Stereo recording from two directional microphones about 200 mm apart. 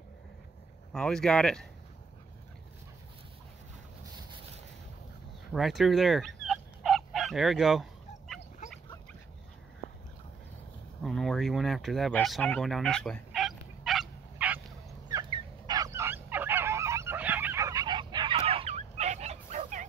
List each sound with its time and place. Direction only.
0.9 s speech: 5° left (ahead or behind)
5.5 s fowl: centre (ahead or behind)
11.0 s fowl: centre (ahead or behind)
15.3 s goose: 20° right (ahead or behind); by 19.9 s 40° right (ahead or behind)